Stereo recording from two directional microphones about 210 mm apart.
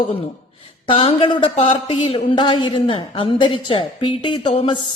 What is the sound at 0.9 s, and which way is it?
A woman's voice, 25° left (ahead or behind).